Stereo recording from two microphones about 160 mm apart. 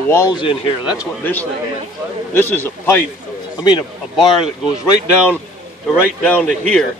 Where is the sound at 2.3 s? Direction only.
10° left (ahead or behind).